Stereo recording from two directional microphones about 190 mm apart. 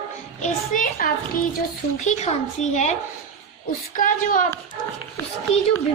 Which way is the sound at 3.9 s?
45° left (ahead or behind).